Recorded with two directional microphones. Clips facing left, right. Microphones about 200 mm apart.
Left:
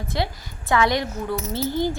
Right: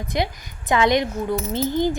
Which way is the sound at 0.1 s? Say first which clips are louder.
Right 3 dB; 15° right (ahead or behind).